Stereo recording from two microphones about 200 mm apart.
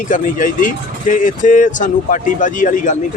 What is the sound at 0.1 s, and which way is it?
Speech, 40° left (ahead or behind).